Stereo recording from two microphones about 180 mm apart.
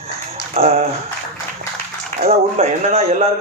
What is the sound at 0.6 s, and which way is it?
Speech, 35° right (ahead or behind).